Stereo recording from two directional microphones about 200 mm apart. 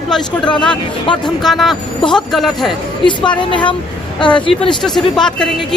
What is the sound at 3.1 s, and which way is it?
A woman's voice, 25° left (ahead or behind).